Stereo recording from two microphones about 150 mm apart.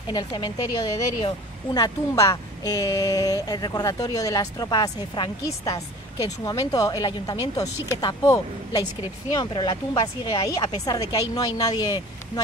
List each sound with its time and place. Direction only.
0.1 s a woman's voice: 25° left (ahead or behind)
6.4 s a woman's voice: 25° left (ahead or behind)
11.1 s a woman's voice: 25° left (ahead or behind)